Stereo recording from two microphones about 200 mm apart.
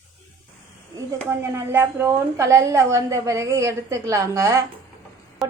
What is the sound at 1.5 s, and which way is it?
A woman's voice, 10° right (ahead or behind).